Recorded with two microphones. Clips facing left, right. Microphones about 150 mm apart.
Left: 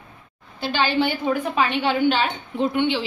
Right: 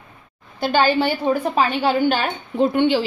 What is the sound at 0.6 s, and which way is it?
A woman's voice, 45° right (ahead or behind).